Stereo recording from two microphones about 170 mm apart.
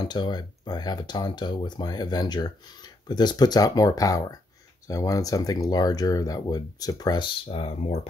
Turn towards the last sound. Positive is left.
turn(degrees=35)  # may be behind; listen again after turning